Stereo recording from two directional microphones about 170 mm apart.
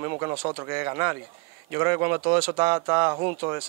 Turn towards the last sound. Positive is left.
turn(degrees=-25)  # may be behind; listen again after turning